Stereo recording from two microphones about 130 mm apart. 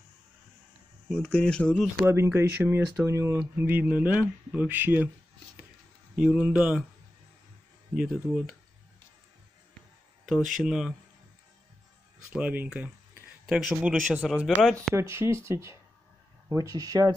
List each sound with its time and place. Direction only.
1.0 s speech: 5° left (ahead or behind)
2.0 s speech: 20° right (ahead or behind)
6.1 s speech: 10° right (ahead or behind)
7.9 s speech: centre (ahead or behind)
10.2 s speech: centre (ahead or behind)
12.3 s speech: 10° right (ahead or behind)
15.0 s speech: 20° right (ahead or behind)